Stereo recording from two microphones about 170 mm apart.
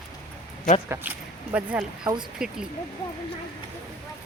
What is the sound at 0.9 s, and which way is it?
Speech, 10° right (ahead or behind).